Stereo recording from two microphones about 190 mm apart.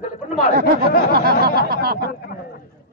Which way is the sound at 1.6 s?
55° right (ahead or behind).